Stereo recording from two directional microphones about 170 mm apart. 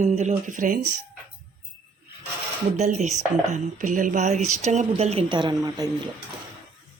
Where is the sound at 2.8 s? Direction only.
40° right (ahead or behind); by 6.1 s 25° right (ahead or behind).